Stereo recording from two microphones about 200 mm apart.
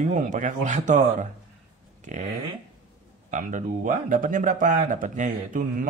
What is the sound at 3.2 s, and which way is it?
A man's voice, 40° right (ahead or behind).